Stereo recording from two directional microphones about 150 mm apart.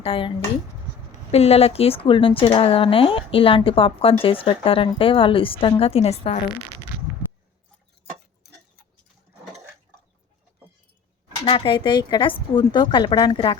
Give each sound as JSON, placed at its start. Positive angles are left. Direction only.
{"t": 0.0, "sound": "speech", "side_deg": 35}
{"t": 11.4, "sound": "speech", "side_deg": 35}